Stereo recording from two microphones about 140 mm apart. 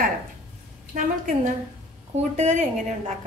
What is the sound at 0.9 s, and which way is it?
Speech, 70° right (ahead or behind).